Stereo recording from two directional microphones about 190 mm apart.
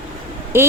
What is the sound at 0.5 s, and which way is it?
Speech, 15° right (ahead or behind).